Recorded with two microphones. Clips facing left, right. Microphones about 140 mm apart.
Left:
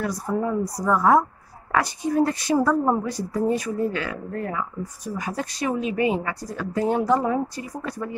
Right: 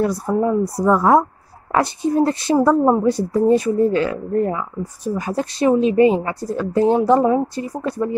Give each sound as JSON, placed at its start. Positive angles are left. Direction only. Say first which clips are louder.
{"t": 0.0, "sound": "speech", "louder": "right 7 dB", "side_deg": -30}